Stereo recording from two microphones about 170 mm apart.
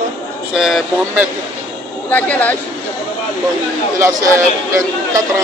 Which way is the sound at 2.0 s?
10° left (ahead or behind).